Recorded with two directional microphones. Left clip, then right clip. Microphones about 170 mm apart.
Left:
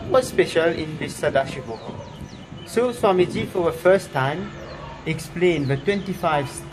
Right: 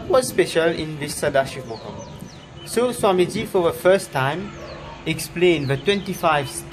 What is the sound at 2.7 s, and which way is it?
A man's voice, 15° right (ahead or behind).